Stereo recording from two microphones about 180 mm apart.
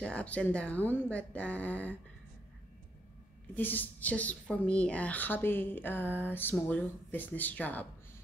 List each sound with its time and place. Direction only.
0.0 s speech: 5° left (ahead or behind)
3.5 s speech: 10° left (ahead or behind)